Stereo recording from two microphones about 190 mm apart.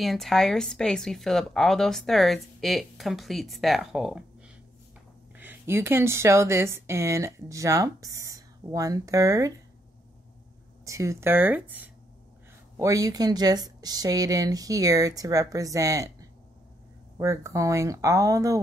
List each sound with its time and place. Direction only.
0.0 s speech: centre (ahead or behind)
5.3 s speech: 10° right (ahead or behind)
10.9 s speech: 15° right (ahead or behind)